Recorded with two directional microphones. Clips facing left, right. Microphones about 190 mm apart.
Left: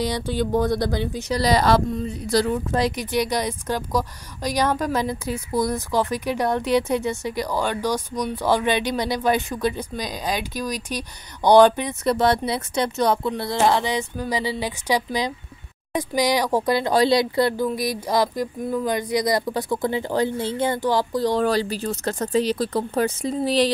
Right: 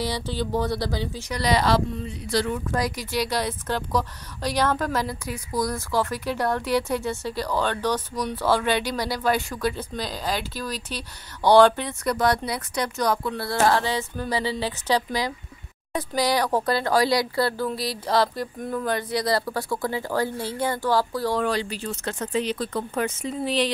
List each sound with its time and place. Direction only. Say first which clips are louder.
0.0 s a woman's voice: left 4 dB; 15° left (ahead or behind)
1.3 s a woman's voice: left 3 dB; 40° left (ahead or behind); by 12.1 s 15° left (ahead or behind)
12.1 s a woman's voice: left 3 dB; 25° left (ahead or behind)
21.4 s speech: left 4 dB; 35° left (ahead or behind)